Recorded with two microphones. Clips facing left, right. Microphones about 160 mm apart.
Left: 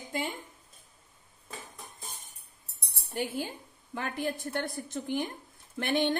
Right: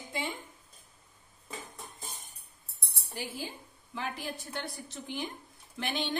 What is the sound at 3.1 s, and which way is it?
A woman's voice, 55° left (ahead or behind).